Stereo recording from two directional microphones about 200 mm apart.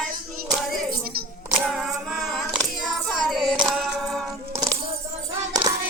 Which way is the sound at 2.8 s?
Centre (ahead or behind).